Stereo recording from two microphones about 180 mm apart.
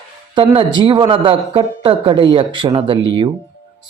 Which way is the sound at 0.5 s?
25° right (ahead or behind).